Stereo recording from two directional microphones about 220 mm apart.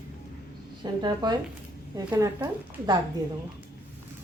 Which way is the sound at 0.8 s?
20° right (ahead or behind).